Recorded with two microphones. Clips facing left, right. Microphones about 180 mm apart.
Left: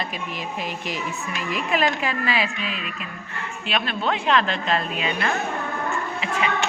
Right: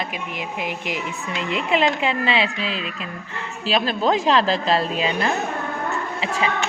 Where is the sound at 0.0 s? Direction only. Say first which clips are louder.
Right 1 dB; 15° right (ahead or behind).